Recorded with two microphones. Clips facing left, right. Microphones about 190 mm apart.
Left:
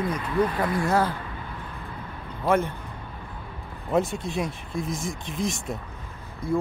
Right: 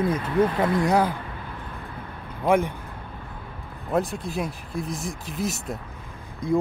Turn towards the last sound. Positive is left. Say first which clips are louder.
# right 3 dB
turn(degrees=-15)  # may be behind; listen again after turning